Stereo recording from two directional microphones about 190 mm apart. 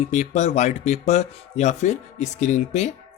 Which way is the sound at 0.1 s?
35° left (ahead or behind).